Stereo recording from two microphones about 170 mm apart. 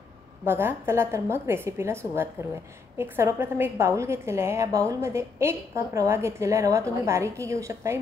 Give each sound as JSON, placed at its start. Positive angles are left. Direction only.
{"t": 0.5, "sound": "a woman's voice", "side_deg": -15}